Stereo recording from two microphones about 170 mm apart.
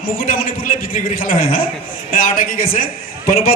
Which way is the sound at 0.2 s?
55° left (ahead or behind).